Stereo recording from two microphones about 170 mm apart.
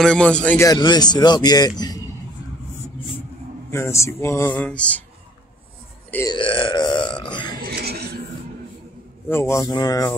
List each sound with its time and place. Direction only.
0.0 s speech: 5° left (ahead or behind)
0.7 s speech: 25° left (ahead or behind)
3.7 s speech: 15° left (ahead or behind)
6.3 s speech: 30° left (ahead or behind)
7.6 s a sound: 70° right (ahead or behind)
9.3 s speech: 15° left (ahead or behind)